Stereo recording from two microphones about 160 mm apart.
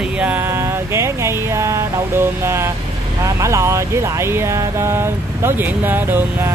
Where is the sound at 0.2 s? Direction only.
15° right (ahead or behind).